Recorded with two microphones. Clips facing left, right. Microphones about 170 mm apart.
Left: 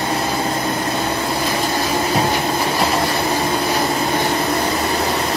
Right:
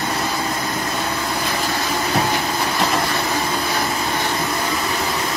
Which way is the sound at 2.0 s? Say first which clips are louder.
Left 2 dB; 30° left (ahead or behind).